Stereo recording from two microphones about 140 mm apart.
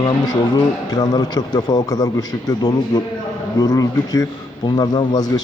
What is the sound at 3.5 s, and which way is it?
A man's voice, 25° left (ahead or behind).